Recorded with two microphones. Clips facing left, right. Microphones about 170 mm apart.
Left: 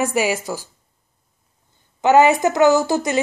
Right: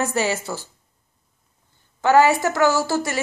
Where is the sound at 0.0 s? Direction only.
10° left (ahead or behind).